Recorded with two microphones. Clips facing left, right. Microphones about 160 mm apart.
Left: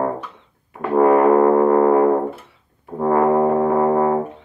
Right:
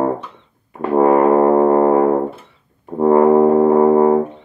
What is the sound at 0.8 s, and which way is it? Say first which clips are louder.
Brass instrument: right 1 dB; 25° right (ahead or behind).